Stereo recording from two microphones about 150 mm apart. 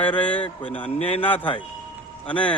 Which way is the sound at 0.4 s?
40° left (ahead or behind).